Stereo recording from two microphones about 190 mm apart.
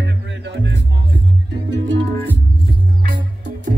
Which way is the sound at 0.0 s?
70° right (ahead or behind).